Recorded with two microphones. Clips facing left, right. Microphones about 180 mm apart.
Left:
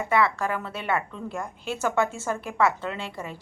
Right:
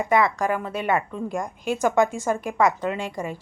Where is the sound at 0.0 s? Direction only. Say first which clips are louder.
Right 3 dB; 15° right (ahead or behind).